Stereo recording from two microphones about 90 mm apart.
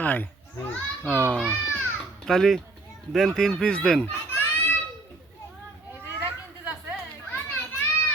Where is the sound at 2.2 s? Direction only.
Centre (ahead or behind).